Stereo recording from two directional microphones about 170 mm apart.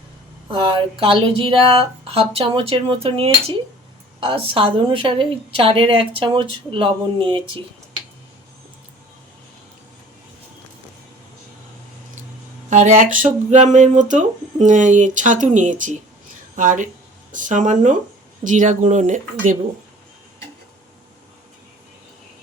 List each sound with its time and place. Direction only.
0.5 s a woman's voice: 30° right (ahead or behind)
12.7 s speech: 45° right (ahead or behind)